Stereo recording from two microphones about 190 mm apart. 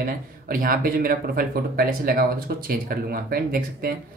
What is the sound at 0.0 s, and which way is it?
Speech, 45° right (ahead or behind).